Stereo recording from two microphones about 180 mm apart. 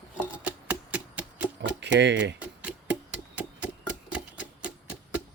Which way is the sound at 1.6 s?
70° right (ahead or behind).